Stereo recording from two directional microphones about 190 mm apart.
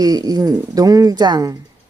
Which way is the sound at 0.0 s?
20° right (ahead or behind).